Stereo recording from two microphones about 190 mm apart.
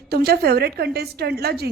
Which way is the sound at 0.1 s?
55° right (ahead or behind).